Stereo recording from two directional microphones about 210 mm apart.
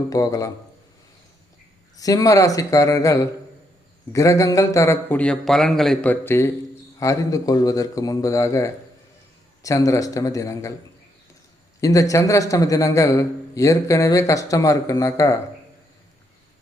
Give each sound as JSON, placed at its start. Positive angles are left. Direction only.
{"t": 0.1, "sound": "a man's voice", "side_deg": 15}
{"t": 2.0, "sound": "a man's voice", "side_deg": 15}
{"t": 11.8, "sound": "a man's voice", "side_deg": 15}